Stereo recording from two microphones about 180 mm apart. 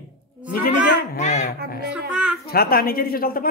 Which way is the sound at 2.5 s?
55° left (ahead or behind).